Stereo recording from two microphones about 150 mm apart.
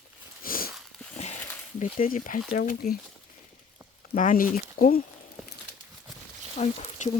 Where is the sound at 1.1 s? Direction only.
50° left (ahead or behind).